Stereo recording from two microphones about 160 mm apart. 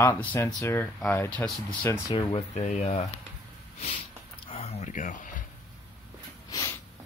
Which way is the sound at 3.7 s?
40° left (ahead or behind).